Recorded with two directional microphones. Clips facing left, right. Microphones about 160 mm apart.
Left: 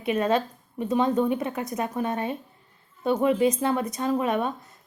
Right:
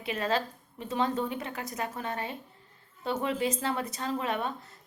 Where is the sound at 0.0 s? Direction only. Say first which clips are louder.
Left 7 dB; 20° left (ahead or behind).